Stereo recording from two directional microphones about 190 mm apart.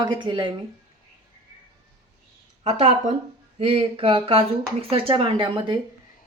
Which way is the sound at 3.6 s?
30° right (ahead or behind).